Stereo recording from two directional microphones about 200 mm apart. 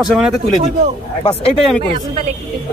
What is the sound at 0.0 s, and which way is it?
Speech, 5° right (ahead or behind).